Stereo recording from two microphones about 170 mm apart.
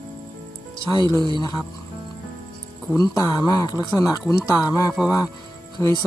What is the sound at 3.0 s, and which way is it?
Speech, 25° left (ahead or behind).